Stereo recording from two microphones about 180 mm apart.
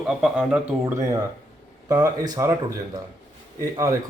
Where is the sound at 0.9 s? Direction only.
15° right (ahead or behind).